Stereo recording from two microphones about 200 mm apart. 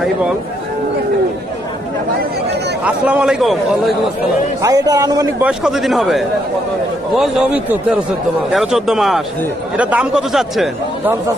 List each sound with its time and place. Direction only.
2.8 s speech: 5° right (ahead or behind)
4.6 s a man's voice: 15° right (ahead or behind)
5.5 s speech: 5° right (ahead or behind)